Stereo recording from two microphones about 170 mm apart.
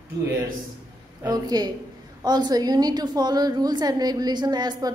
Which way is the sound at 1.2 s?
25° right (ahead or behind).